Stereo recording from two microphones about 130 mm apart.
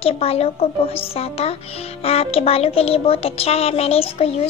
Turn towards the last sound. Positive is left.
turn(degrees=50)  # may be behind; listen again after turning